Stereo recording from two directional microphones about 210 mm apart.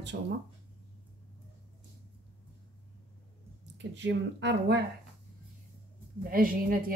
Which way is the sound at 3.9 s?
55° right (ahead or behind).